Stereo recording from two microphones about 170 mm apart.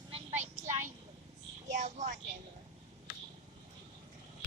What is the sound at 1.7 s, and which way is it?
Speech, 45° right (ahead or behind).